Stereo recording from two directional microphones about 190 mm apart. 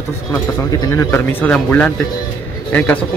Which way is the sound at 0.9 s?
10° left (ahead or behind).